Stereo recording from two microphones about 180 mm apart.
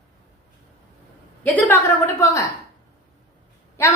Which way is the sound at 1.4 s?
10° left (ahead or behind).